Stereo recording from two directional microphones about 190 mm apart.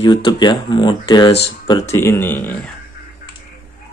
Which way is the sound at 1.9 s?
15° left (ahead or behind).